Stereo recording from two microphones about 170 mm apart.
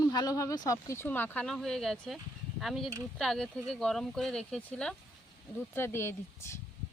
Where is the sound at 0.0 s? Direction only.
20° left (ahead or behind).